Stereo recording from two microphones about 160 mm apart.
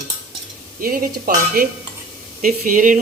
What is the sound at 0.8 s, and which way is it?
Speech, 65° right (ahead or behind).